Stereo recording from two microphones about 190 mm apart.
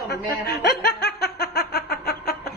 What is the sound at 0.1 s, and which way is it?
Speech, 60° left (ahead or behind).